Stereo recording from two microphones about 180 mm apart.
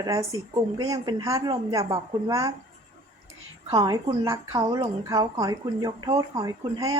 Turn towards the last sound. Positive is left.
turn(degrees=-20)  # may be behind; listen again after turning